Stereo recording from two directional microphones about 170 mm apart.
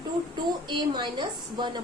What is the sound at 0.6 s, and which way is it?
A woman's voice, 25° right (ahead or behind).